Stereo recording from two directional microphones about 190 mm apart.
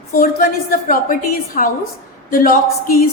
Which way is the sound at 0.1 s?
50° left (ahead or behind).